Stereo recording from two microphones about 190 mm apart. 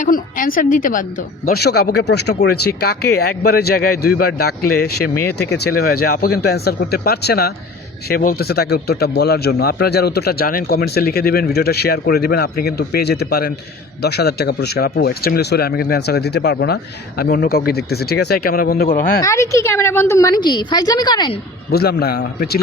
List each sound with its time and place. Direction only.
0.0 s a woman's voice: 45° left (ahead or behind)
1.5 s speech: 55° left (ahead or behind)
19.2 s a woman's voice: 15° left (ahead or behind)
21.7 s speech: 55° left (ahead or behind)